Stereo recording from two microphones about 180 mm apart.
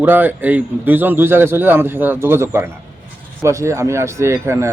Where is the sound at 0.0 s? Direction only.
10° right (ahead or behind).